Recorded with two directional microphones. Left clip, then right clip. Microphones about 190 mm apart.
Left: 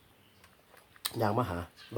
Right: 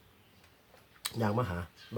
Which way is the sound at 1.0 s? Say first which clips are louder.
Left 2 dB; 10° left (ahead or behind).